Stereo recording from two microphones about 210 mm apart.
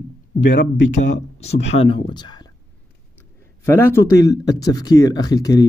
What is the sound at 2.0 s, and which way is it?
Speech, 20° left (ahead or behind).